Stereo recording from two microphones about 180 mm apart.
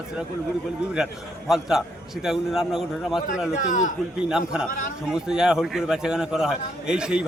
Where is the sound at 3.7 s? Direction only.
45° left (ahead or behind).